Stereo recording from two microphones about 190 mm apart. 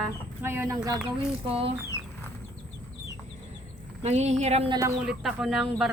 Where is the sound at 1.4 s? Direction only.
30° right (ahead or behind).